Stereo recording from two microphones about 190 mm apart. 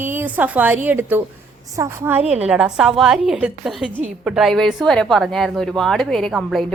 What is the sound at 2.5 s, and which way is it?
A woman's voice, 5° right (ahead or behind).